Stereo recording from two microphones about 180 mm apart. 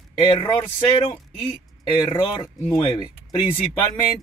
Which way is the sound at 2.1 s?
25° left (ahead or behind).